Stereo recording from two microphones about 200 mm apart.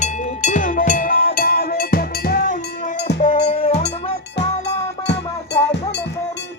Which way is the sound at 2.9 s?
55° left (ahead or behind).